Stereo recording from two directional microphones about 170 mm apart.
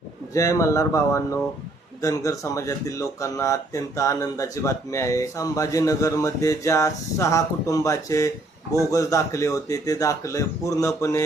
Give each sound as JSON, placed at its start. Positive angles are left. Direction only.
{"t": 0.3, "sound": "speech", "side_deg": 20}